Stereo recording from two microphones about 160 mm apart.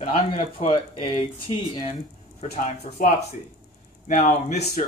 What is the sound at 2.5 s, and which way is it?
Speech, 45° left (ahead or behind).